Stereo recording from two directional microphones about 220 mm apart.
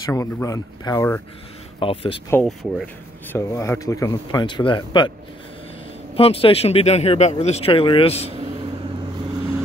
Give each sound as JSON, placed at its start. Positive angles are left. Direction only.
{"t": 0.0, "sound": "speech", "side_deg": 15}
{"t": 1.8, "sound": "speech", "side_deg": 25}
{"t": 2.3, "sound": "speech", "side_deg": 0}
{"t": 3.3, "sound": "speech", "side_deg": 15}
{"t": 6.1, "sound": "speech", "side_deg": 25}